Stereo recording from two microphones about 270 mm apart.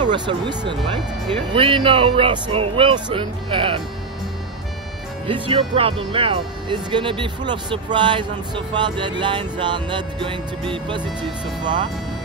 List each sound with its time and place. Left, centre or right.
0.0 s speech: centre
5.2 s speech: centre